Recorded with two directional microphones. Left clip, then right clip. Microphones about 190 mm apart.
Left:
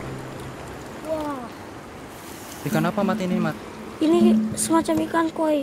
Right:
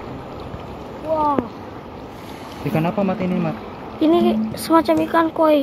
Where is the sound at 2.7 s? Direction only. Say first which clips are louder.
Right 2 dB; 10° left (ahead or behind).